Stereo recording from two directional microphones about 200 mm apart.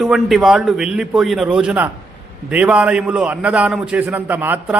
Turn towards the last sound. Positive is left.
turn(degrees=-10)  # may be behind; listen again after turning